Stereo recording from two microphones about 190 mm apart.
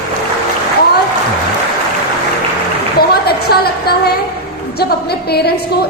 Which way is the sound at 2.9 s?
55° left (ahead or behind).